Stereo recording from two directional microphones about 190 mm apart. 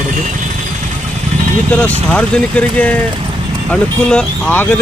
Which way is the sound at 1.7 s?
5° left (ahead or behind).